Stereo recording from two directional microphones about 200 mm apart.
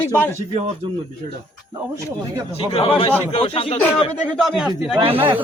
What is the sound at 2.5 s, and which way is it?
Speech, 30° left (ahead or behind).